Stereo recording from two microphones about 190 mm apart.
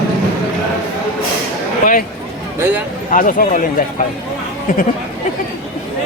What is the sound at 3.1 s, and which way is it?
Speech, 45° left (ahead or behind).